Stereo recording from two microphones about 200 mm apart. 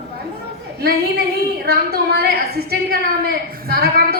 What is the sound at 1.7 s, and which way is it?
A woman's voice, 50° right (ahead or behind).